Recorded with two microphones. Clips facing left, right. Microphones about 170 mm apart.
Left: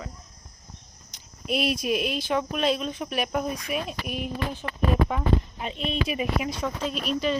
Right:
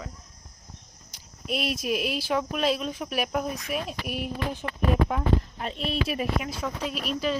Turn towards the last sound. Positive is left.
turn(degrees=-5)  # may be behind; listen again after turning